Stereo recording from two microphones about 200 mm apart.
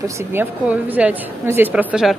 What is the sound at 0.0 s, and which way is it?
A woman's voice, 10° right (ahead or behind).